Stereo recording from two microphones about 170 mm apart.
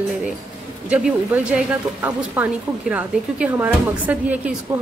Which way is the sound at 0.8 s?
10° right (ahead or behind).